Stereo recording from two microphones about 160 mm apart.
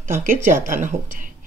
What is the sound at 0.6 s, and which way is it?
Speech, 55° right (ahead or behind).